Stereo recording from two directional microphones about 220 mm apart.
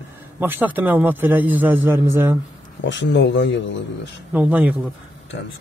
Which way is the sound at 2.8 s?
55° left (ahead or behind).